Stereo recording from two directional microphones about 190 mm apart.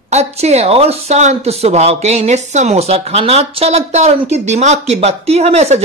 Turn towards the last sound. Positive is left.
turn(degrees=-35)  # may be behind; listen again after turning